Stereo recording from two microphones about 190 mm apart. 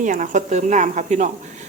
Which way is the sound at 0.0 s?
40° right (ahead or behind).